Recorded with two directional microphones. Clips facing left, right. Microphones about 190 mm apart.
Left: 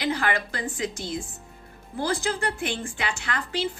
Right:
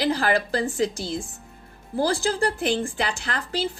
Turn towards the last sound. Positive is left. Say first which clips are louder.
# right 1 dB
turn(degrees=-35)  # may be behind; listen again after turning